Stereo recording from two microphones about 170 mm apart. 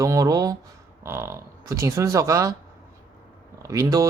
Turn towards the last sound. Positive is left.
turn(degrees=-20)  # may be behind; listen again after turning